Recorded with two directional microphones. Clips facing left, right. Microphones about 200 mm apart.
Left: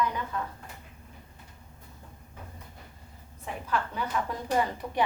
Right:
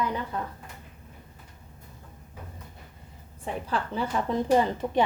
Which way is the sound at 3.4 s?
30° right (ahead or behind).